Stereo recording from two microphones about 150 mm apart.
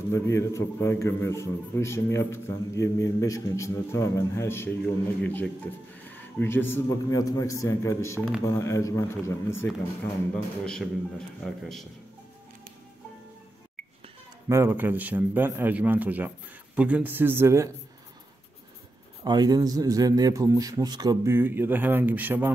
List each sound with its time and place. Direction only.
0.1 s a man's voice: 20° left (ahead or behind)
10.3 s a man's voice: 5° left (ahead or behind)
14.5 s a man's voice: 15° right (ahead or behind)
19.2 s a man's voice: 25° right (ahead or behind)